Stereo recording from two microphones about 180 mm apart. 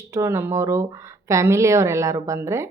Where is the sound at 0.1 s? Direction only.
15° right (ahead or behind).